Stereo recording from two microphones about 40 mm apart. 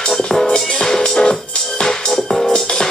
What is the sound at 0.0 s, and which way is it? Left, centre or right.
Music, centre.